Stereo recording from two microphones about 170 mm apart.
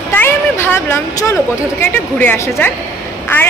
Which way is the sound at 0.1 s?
15° left (ahead or behind).